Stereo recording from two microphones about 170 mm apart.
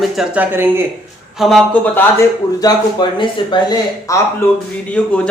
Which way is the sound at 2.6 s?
25° left (ahead or behind).